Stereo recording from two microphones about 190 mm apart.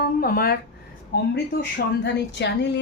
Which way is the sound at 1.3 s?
65° left (ahead or behind).